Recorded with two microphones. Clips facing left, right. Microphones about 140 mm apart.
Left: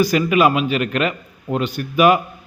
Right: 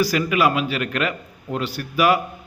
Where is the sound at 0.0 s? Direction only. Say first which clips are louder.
Left 4 dB; 20° left (ahead or behind).